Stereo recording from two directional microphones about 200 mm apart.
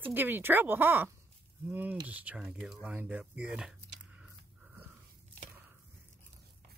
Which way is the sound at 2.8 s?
5° right (ahead or behind).